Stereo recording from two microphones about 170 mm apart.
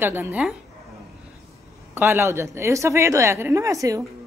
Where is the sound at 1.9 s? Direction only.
15° right (ahead or behind).